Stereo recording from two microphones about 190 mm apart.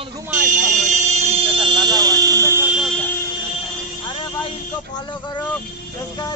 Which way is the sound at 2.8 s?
5° left (ahead or behind).